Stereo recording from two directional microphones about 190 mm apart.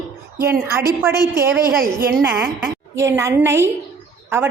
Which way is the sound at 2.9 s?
15° right (ahead or behind).